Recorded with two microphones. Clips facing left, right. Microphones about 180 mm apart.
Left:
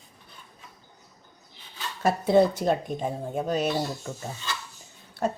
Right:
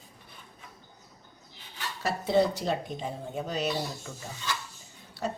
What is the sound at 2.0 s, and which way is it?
Speech, 50° left (ahead or behind).